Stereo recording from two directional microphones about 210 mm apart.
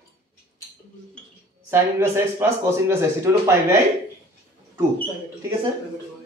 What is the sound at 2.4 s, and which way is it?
Speech, 10° right (ahead or behind).